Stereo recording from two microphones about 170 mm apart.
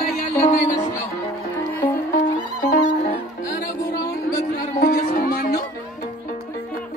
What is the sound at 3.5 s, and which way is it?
Music, 55° left (ahead or behind).